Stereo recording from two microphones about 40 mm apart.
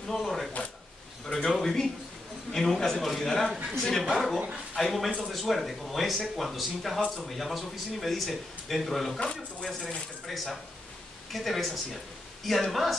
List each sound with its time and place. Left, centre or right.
0.1 s a man's voice: centre
9.2 s speech: left
9.8 s speech: centre